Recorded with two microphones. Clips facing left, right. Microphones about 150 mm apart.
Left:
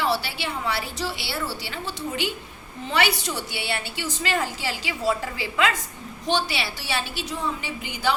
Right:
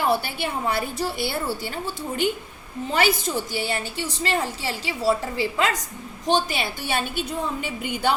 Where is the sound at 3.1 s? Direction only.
75° left (ahead or behind).